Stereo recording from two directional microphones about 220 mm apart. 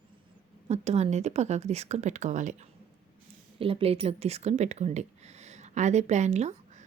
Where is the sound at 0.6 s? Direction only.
30° right (ahead or behind).